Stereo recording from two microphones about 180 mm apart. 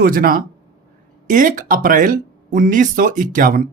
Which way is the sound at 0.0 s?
55° right (ahead or behind).